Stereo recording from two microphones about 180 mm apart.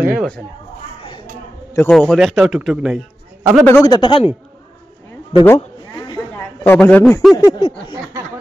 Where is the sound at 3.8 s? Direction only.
25° left (ahead or behind).